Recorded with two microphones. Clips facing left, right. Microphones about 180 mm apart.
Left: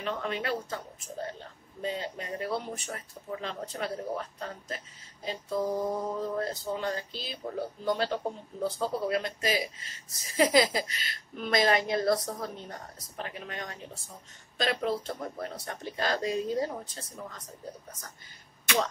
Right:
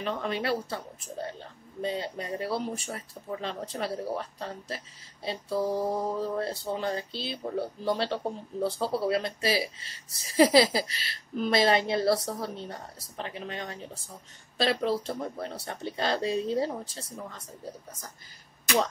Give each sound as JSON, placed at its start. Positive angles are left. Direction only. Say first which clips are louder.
{"t": 0.0, "sound": "a woman's voice", "louder": "right 2 dB", "side_deg": -35}